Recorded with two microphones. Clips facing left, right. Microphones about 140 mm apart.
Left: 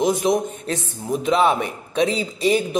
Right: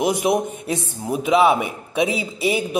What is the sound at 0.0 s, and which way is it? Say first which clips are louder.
A man's voice: even; 15° right (ahead or behind).